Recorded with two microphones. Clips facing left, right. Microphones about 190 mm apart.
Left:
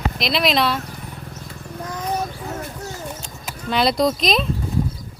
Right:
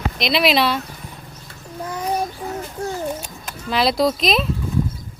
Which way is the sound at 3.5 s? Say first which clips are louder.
Even; centre (ahead or behind).